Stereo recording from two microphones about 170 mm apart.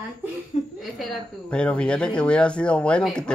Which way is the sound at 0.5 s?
35° left (ahead or behind).